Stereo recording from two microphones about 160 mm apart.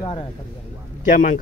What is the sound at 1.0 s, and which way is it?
Speech, 55° left (ahead or behind).